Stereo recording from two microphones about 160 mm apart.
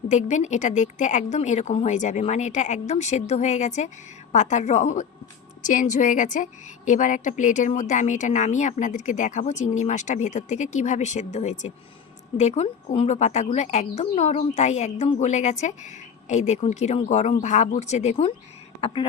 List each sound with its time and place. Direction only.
0.1 s a woman's voice: 45° left (ahead or behind)